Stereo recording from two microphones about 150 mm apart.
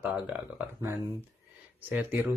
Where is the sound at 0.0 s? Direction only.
5° right (ahead or behind).